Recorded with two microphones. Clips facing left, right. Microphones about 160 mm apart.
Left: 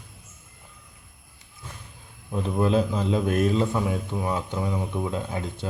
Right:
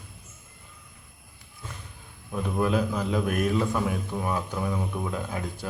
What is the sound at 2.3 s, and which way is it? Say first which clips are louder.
Speech: left 3 dB; 25° left (ahead or behind).